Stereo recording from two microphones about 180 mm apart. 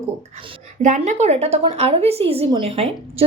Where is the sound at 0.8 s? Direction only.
40° right (ahead or behind).